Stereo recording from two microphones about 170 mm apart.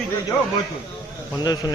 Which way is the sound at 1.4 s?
25° left (ahead or behind).